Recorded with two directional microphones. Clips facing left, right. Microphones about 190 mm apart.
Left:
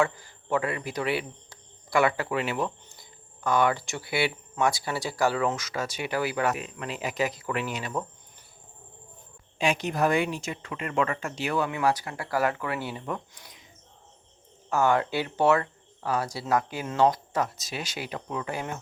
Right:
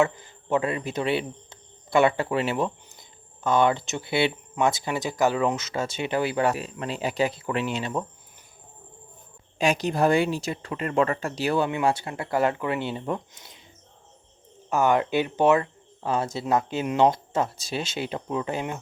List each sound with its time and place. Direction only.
0.0 s speech: 20° right (ahead or behind)
9.6 s speech: 40° right (ahead or behind)
14.7 s speech: 20° right (ahead or behind)